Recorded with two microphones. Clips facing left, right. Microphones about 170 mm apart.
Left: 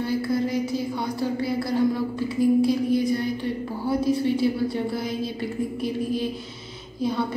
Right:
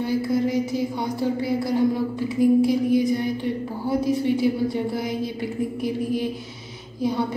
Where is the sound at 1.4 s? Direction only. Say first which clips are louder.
Right 1 dB; 20° right (ahead or behind).